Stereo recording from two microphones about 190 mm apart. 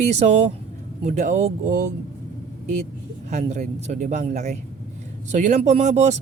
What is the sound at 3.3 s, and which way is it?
Speech, 40° right (ahead or behind).